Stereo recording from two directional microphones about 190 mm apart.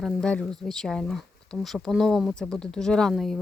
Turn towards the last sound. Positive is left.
turn(degrees=0)  # may be behind; listen again after turning